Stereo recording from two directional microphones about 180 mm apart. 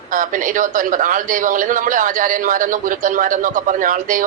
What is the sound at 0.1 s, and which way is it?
A man's voice, 50° right (ahead or behind).